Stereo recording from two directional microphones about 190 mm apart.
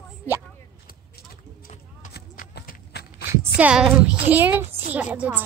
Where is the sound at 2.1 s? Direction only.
50° left (ahead or behind).